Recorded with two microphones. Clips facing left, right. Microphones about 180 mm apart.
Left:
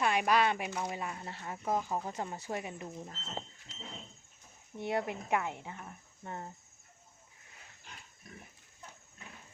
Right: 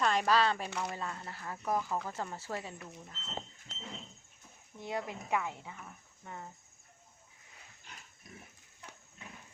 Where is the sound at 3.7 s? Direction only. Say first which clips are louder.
Even; 55° right (ahead or behind).